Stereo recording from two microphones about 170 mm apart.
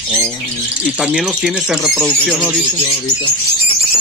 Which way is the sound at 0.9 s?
5° right (ahead or behind).